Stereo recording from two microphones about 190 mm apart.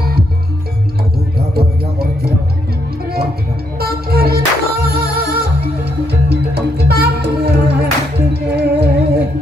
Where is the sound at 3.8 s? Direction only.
55° right (ahead or behind).